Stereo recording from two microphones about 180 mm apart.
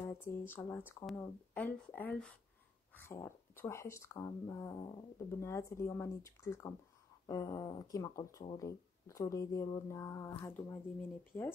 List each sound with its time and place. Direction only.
0.0 s speech: 10° left (ahead or behind)